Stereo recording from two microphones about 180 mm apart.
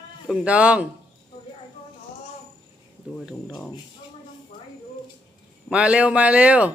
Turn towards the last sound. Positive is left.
turn(degrees=-5)  # may be behind; listen again after turning